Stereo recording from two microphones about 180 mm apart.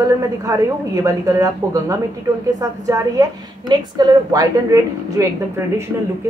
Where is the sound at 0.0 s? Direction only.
20° right (ahead or behind).